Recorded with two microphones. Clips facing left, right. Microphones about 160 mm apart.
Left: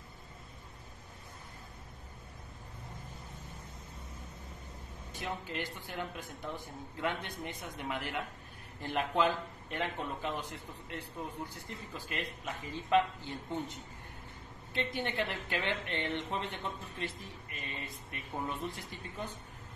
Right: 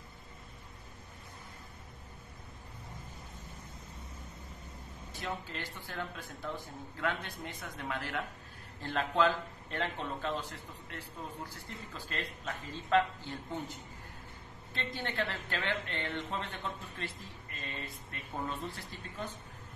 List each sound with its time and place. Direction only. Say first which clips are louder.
5.1 s speech: left 1 dB; 20° left (ahead or behind)